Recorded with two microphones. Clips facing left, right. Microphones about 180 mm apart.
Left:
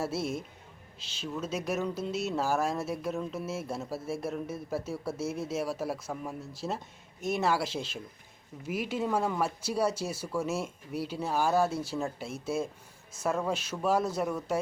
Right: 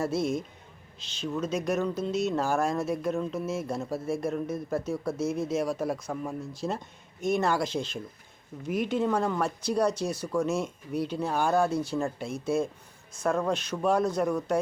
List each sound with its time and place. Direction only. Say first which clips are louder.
0.0 s speech: right 4 dB; 5° left (ahead or behind)